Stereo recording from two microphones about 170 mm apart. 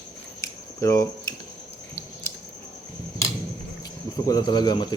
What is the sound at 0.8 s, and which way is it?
Cricket, 20° left (ahead or behind).